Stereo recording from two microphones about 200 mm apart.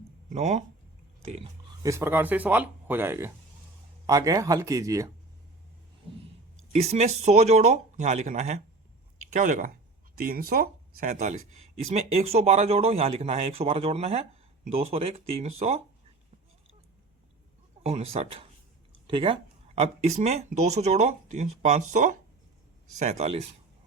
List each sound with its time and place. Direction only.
0.3 s speech: 35° right (ahead or behind)
1.8 s speech: 15° right (ahead or behind)
6.7 s speech: 35° right (ahead or behind)
17.8 s speech: 30° right (ahead or behind)